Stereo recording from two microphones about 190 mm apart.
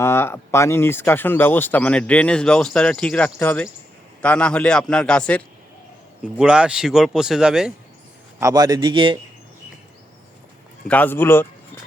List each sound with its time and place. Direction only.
0.0 s speech: 15° left (ahead or behind); by 7.7 s 5° right (ahead or behind)
8.4 s speech: 20° right (ahead or behind)
10.8 s speech: 10° left (ahead or behind)